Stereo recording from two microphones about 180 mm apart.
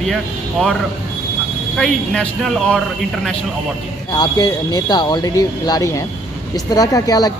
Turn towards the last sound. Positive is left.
turn(degrees=20)  # may be behind; listen again after turning